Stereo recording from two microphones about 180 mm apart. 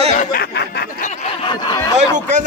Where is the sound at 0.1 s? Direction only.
45° left (ahead or behind).